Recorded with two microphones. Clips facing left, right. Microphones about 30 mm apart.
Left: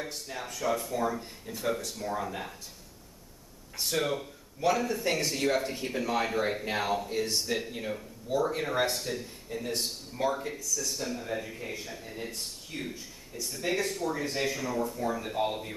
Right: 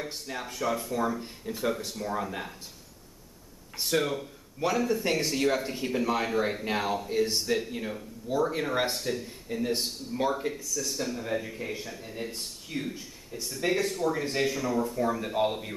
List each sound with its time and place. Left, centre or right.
0.1 s speech: centre
3.8 s speech: centre
10.9 s speech: centre
12.9 s speech: centre